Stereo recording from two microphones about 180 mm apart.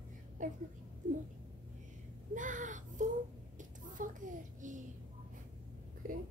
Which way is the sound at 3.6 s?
45° right (ahead or behind).